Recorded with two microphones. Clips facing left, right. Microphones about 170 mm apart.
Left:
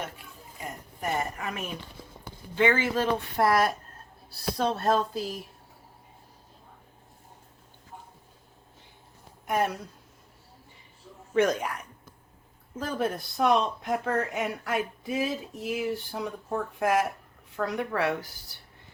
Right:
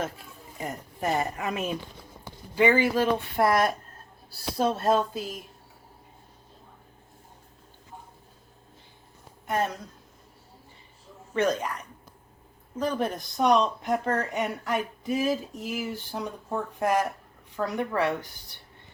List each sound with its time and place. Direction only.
0.6 s a woman's voice: 35° right (ahead or behind)
2.6 s speech: 10° right (ahead or behind)
3.4 s speech: centre (ahead or behind)
9.5 s speech: 10° left (ahead or behind)
11.3 s speech: 10° left (ahead or behind)